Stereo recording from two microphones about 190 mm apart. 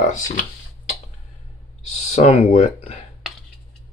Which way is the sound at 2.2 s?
40° left (ahead or behind).